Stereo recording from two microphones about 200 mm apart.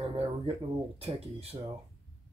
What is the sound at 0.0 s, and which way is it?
Speech, 30° right (ahead or behind).